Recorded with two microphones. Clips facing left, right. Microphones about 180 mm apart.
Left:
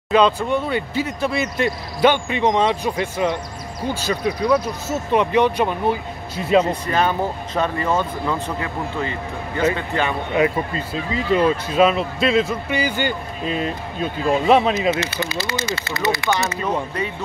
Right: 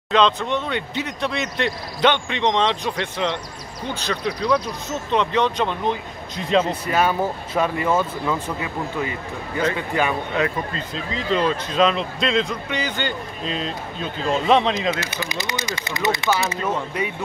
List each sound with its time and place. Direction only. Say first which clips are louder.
0.1 s speech: left 2 dB; 10° left (ahead or behind)
6.9 s speech: even; 10° right (ahead or behind)
10.3 s speech: left 4 dB; 10° left (ahead or behind)
15.2 s speech: left 3 dB; 15° right (ahead or behind)